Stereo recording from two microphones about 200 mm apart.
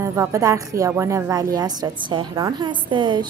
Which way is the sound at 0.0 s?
15° right (ahead or behind).